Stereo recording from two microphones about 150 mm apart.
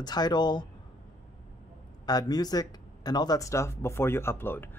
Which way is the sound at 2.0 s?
25° left (ahead or behind).